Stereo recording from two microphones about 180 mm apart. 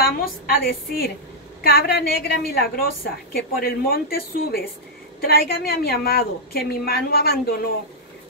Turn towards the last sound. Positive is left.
turn(degrees=55)  # may be behind; listen again after turning